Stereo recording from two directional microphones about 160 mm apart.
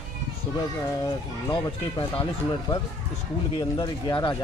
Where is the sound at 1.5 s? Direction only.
35° left (ahead or behind).